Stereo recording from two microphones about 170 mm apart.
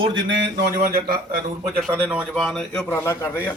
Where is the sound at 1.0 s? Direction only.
60° right (ahead or behind).